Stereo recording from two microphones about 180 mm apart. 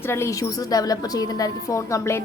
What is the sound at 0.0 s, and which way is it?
A woman's voice, 15° left (ahead or behind).